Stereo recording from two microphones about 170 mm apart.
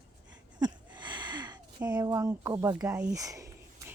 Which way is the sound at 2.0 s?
15° right (ahead or behind).